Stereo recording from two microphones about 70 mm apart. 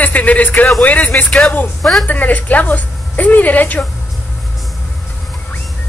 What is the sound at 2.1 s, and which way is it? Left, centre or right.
A woman's voice, left.